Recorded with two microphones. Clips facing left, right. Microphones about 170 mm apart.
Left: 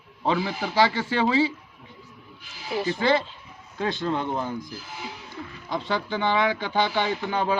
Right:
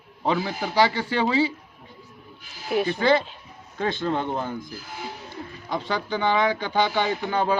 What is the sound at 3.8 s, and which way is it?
Speech, 50° right (ahead or behind).